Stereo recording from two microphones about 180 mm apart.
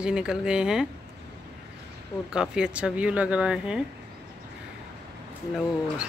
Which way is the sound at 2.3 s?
5° right (ahead or behind).